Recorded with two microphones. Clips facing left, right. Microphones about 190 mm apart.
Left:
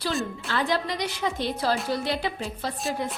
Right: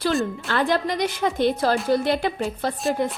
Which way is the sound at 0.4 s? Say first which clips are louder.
Right 2 dB; 55° right (ahead or behind).